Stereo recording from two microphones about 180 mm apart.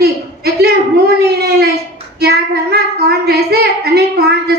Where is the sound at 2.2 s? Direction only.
60° right (ahead or behind).